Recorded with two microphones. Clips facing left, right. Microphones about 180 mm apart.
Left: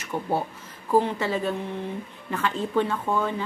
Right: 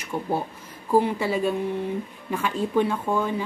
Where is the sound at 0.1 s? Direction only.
15° left (ahead or behind).